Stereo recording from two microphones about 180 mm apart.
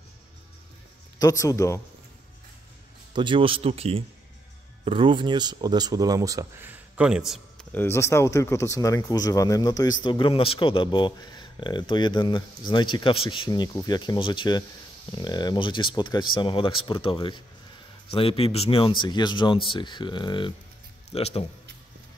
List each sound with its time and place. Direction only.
1.2 s speech: 20° left (ahead or behind)
3.1 s speech: 25° right (ahead or behind); by 7.6 s centre (ahead or behind)
7.7 s a man's voice: 15° left (ahead or behind); by 21.5 s 35° left (ahead or behind)